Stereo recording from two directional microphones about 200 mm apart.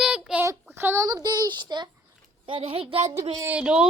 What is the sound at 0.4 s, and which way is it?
Child singing, 15° right (ahead or behind).